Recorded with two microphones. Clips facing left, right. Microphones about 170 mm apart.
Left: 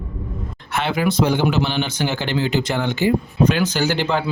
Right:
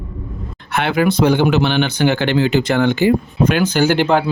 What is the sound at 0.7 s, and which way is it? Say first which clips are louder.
Speech: right 4 dB; 65° right (ahead or behind).